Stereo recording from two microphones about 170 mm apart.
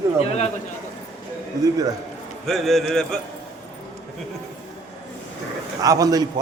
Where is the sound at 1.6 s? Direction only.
20° right (ahead or behind).